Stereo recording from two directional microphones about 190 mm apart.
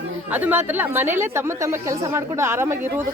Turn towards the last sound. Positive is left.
turn(degrees=-10)  # may be behind; listen again after turning